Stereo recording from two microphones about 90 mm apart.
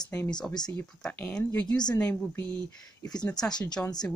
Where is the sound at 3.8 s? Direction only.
20° left (ahead or behind).